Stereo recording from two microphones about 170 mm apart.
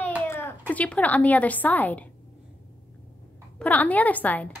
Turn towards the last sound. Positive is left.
turn(degrees=10)  # may be behind; listen again after turning